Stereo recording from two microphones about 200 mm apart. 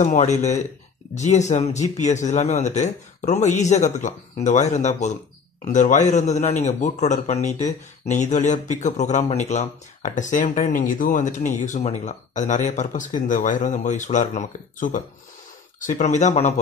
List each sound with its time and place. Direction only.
0.0 s a man's voice: 35° left (ahead or behind)